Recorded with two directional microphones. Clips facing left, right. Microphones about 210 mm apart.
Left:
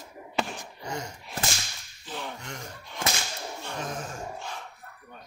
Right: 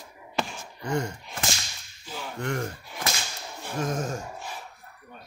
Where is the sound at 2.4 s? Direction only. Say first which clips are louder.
Right 12 dB; 55° right (ahead or behind).